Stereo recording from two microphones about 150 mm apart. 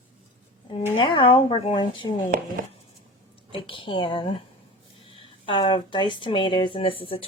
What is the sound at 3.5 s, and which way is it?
Speech, 35° left (ahead or behind).